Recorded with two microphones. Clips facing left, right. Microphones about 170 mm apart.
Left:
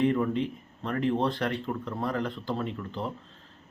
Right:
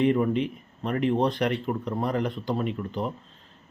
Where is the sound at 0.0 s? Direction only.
20° right (ahead or behind).